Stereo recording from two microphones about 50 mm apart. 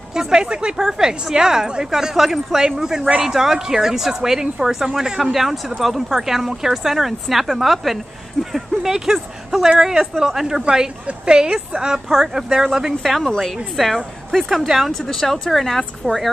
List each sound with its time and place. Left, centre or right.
0.1 s speech: centre
10.6 s speech: centre
12.7 s a woman's voice: centre